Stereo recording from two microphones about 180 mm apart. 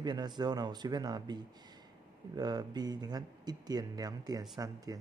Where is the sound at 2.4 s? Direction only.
20° right (ahead or behind).